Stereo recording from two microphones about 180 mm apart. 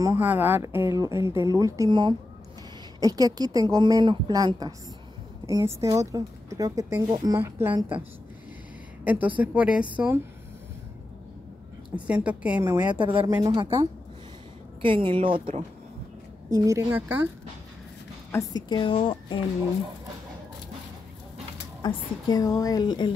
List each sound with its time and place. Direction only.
0.0 s a woman's voice: 15° right (ahead or behind)
9.0 s a woman's voice: 10° right (ahead or behind)
11.9 s speech: 5° right (ahead or behind)
13.2 s a woman's voice: 20° right (ahead or behind)
16.5 s speech: 15° right (ahead or behind)
18.3 s a woman's voice: 25° left (ahead or behind)
21.8 s a woman's voice: 20° left (ahead or behind)